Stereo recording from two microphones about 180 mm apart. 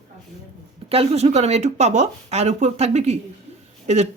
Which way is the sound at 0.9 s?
35° right (ahead or behind).